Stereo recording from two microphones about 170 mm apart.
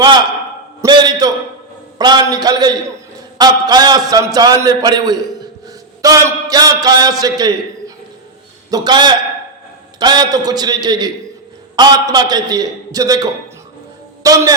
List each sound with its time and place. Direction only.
0.8 s a sound: 25° right (ahead or behind)
2.0 s a man's voice: 25° right (ahead or behind)
8.7 s a man's voice: 25° right (ahead or behind)